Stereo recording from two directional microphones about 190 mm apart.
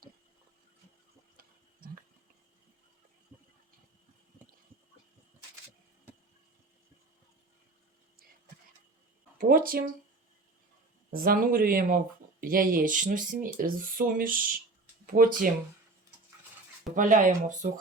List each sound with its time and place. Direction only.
9.4 s speech: 50° right (ahead or behind)
11.1 s speech: 50° right (ahead or behind)
16.9 s speech: 45° right (ahead or behind)